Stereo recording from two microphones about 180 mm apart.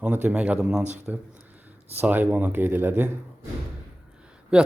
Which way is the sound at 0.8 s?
40° right (ahead or behind).